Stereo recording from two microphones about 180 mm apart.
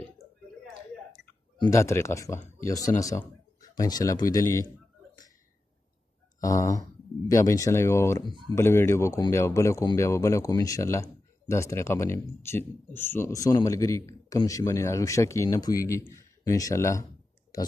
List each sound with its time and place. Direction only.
1.6 s speech: 15° left (ahead or behind)
6.4 s speech: 20° left (ahead or behind)